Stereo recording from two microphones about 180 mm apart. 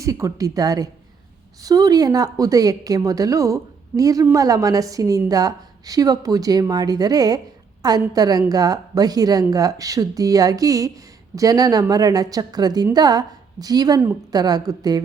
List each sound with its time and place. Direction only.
0.0 s a woman's voice: 15° right (ahead or behind)